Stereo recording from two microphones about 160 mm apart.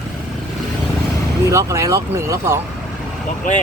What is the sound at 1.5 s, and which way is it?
Speech, 20° right (ahead or behind).